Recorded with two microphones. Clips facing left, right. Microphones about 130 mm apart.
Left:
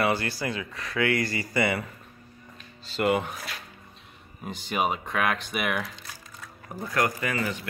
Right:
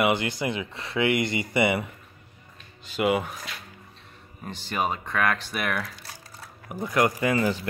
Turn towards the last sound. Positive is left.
turn(degrees=-30)  # may be behind; listen again after turning